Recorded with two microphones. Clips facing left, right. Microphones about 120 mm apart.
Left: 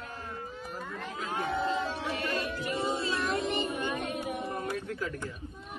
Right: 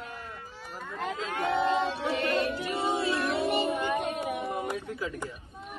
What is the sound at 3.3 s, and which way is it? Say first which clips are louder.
Music: right 4 dB; 60° right (ahead or behind).